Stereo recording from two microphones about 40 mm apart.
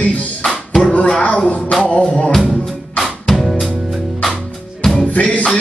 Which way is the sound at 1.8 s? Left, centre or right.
Left.